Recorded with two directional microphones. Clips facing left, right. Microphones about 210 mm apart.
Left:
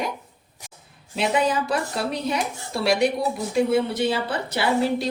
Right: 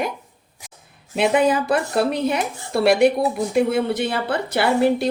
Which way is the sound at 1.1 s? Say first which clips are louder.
Right 5 dB; 55° right (ahead or behind).